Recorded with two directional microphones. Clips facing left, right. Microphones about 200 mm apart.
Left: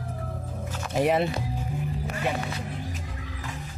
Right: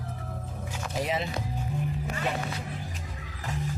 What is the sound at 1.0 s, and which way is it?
Speech, 60° left (ahead or behind).